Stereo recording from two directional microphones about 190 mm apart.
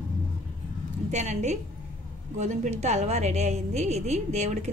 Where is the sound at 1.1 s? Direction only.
35° right (ahead or behind).